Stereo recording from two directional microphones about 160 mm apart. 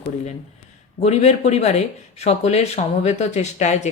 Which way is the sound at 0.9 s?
45° left (ahead or behind).